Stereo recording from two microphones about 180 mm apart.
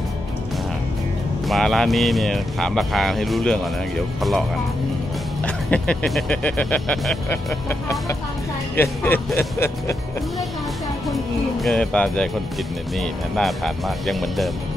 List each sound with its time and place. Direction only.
1.5 s speech: centre (ahead or behind)
9.0 s speech: 10° left (ahead or behind)
11.6 s speech: 5° left (ahead or behind)